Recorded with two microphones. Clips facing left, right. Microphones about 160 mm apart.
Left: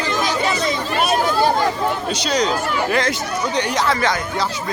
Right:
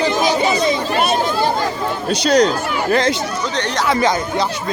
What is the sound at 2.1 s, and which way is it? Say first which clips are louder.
Speech: right 11 dB; 60° right (ahead or behind).